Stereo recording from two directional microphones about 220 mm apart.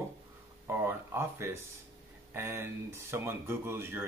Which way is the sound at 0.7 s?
10° right (ahead or behind).